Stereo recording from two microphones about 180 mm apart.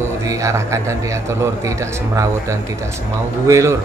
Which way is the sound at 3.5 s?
15° right (ahead or behind).